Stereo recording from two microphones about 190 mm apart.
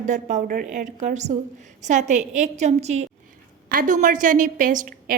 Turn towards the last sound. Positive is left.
turn(degrees=-45)  # may be behind; listen again after turning